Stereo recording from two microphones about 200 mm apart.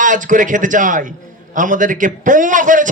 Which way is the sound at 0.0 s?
40° right (ahead or behind).